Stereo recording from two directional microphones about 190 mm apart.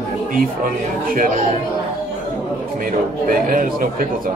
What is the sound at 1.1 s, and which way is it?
Speech, 45° right (ahead or behind).